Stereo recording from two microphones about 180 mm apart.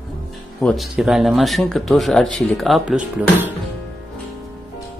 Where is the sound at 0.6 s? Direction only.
Centre (ahead or behind).